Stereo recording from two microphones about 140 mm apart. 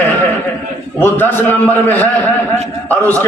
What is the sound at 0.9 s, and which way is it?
A man's voice, 15° left (ahead or behind).